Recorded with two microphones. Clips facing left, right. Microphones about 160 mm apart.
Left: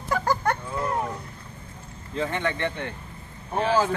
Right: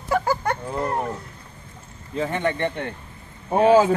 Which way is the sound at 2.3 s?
45° right (ahead or behind).